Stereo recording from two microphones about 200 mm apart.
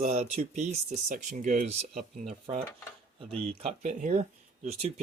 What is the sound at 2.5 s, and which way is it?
Speech, 25° right (ahead or behind).